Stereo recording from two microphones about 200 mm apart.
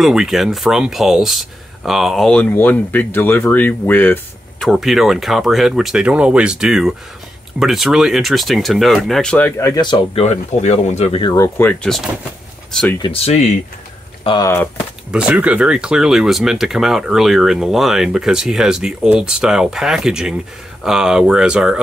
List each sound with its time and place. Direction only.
0.0 s speech: centre (ahead or behind); by 11.3 s 30° left (ahead or behind)
11.3 s speech: 15° left (ahead or behind)
13.0 s speech: 30° left (ahead or behind)
14.2 s speech: 20° left (ahead or behind)
15.0 s speech: 5° right (ahead or behind)